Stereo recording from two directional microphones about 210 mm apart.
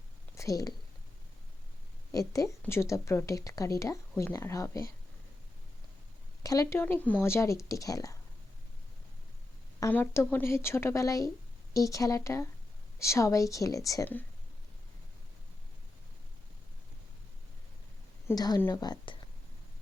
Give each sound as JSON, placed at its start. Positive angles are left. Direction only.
{"t": 0.3, "sound": "a sound", "side_deg": 15}
{"t": 2.1, "sound": "speech", "side_deg": 15}
{"t": 6.4, "sound": "speech", "side_deg": 15}
{"t": 9.8, "sound": "speech", "side_deg": 10}
{"t": 18.3, "sound": "a woman's voice", "side_deg": 15}